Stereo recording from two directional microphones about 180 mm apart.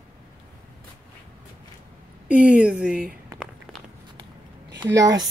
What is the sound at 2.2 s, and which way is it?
Speech, 5° right (ahead or behind).